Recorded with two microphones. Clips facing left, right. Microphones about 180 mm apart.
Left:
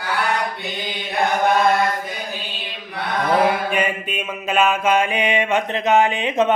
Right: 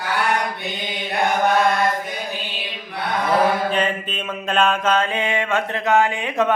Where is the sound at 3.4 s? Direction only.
10° left (ahead or behind).